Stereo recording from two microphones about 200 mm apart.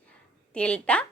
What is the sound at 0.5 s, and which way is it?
Speech, 5° left (ahead or behind).